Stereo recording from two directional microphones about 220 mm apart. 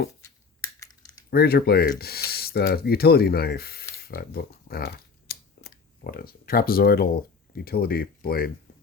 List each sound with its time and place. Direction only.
1.3 s speech: 45° left (ahead or behind)